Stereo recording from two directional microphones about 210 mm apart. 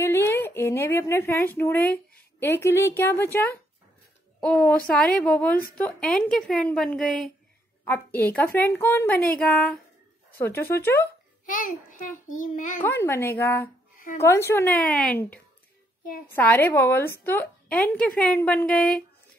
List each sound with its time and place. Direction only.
0.0 s a woman's voice: 10° left (ahead or behind)
11.4 s a child's voice: 40° left (ahead or behind)
12.8 s a woman's voice: 10° left (ahead or behind)
13.9 s a sound: 40° left (ahead or behind)
14.2 s a woman's voice: 10° left (ahead or behind)